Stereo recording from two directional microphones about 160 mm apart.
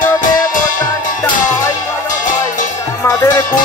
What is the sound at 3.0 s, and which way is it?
Music, 20° left (ahead or behind).